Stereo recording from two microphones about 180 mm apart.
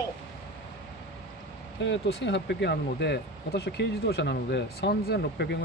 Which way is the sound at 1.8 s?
80° left.